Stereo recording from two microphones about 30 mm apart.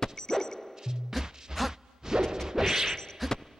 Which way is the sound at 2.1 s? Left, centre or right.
Right.